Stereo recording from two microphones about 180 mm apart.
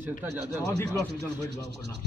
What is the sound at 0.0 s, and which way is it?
Speech, 10° right (ahead or behind).